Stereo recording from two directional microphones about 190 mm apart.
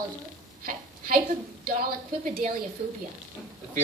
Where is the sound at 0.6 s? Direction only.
50° right (ahead or behind).